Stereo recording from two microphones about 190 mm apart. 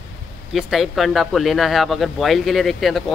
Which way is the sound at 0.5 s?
Centre (ahead or behind).